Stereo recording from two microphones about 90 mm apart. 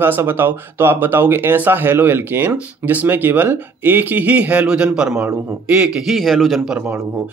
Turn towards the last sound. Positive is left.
turn(degrees=0)  # may be behind; listen again after turning